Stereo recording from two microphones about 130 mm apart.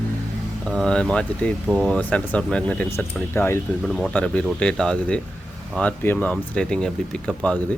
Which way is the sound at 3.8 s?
5° left (ahead or behind).